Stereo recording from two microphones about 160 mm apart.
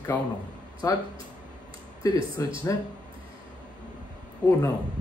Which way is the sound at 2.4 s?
20° left (ahead or behind).